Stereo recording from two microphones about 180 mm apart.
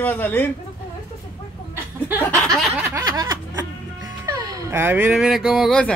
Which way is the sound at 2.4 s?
5° right (ahead or behind).